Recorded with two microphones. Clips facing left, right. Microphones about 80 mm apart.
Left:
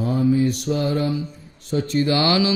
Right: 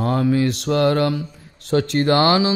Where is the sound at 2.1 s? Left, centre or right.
Right.